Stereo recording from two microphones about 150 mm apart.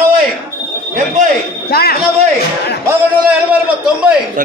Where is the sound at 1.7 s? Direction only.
90° left.